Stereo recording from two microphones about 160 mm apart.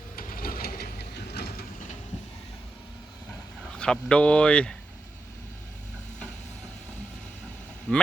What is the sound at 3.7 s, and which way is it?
Speech, 5° left (ahead or behind).